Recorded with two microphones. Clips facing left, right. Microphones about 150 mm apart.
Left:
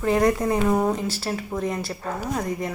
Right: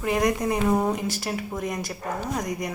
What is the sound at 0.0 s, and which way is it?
A woman's voice, 15° right (ahead or behind).